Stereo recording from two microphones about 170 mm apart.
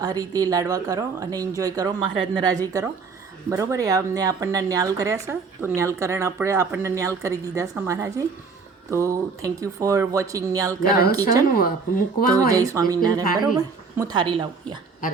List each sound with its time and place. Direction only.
0.0 s a woman's voice: 20° right (ahead or behind)
11.5 s speech: 60° left (ahead or behind)
12.4 s speech: 20° right (ahead or behind)